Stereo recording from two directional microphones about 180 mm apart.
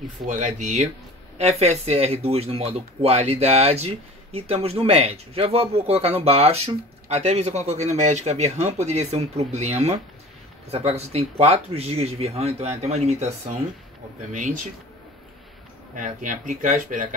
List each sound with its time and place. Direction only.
0.6 s speech: 40° right (ahead or behind)
16.0 s speech: 45° right (ahead or behind)